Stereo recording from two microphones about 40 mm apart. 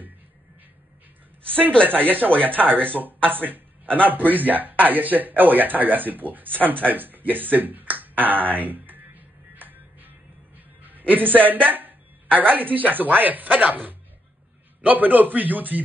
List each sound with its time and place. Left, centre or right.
1.4 s a woman's voice: right
8.2 s music: right
11.6 s speech: right